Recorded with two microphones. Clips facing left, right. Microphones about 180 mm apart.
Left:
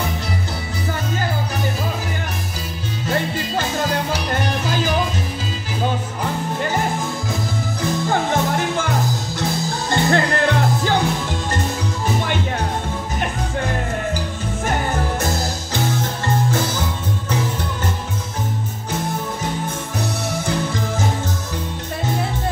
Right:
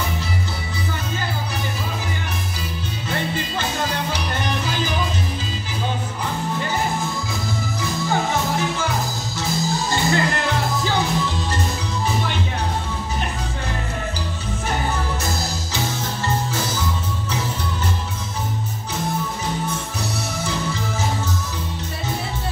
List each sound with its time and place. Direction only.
3.1 s music: 45° left (ahead or behind)
8.1 s music: 55° left (ahead or behind)